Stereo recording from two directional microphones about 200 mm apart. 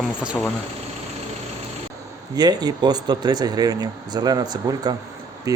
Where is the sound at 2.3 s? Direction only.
20° right (ahead or behind).